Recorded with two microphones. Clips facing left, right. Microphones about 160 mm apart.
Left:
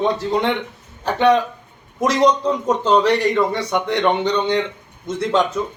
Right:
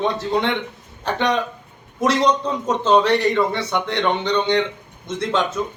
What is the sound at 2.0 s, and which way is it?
A man's voice, 10° left (ahead or behind).